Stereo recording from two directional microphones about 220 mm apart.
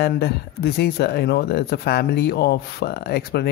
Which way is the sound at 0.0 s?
50° left (ahead or behind).